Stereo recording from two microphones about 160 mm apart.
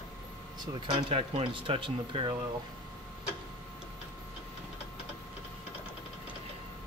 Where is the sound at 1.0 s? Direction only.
35° right (ahead or behind).